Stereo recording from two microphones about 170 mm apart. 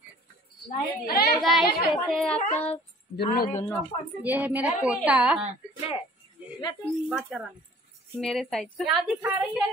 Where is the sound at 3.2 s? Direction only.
60° left (ahead or behind).